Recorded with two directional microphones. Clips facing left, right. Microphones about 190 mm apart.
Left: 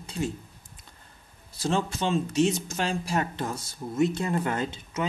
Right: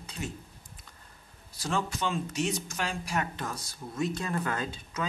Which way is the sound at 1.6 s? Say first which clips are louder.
Left 4 dB; 25° left (ahead or behind).